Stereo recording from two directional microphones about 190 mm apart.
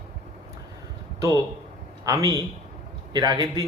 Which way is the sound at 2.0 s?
20° right (ahead or behind).